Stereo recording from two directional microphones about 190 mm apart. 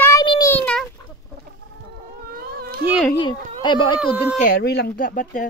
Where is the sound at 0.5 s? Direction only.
5° left (ahead or behind).